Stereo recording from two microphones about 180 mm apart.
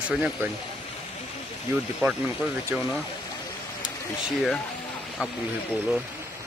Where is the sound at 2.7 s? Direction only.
10° right (ahead or behind).